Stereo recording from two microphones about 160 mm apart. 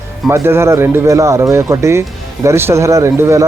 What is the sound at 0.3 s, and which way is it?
Speech, 15° right (ahead or behind).